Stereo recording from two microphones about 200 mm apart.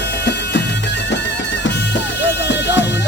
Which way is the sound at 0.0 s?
60° left (ahead or behind).